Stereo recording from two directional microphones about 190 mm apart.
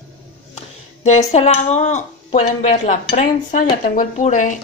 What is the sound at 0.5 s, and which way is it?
Music, 35° left (ahead or behind).